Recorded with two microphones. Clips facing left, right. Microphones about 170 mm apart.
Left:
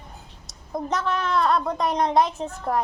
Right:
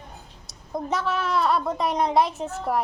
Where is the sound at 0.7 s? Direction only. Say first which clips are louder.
Left 1 dB; centre (ahead or behind).